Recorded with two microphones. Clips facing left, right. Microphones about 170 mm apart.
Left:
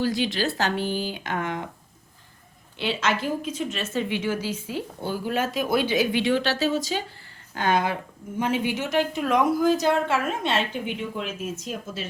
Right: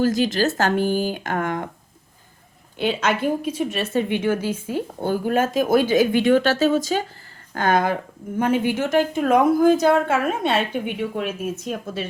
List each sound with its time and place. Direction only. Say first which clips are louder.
0.0 s a woman's voice: right 5 dB; 45° right (ahead or behind)
2.7 s a woman's voice: right 4 dB; 50° right (ahead or behind)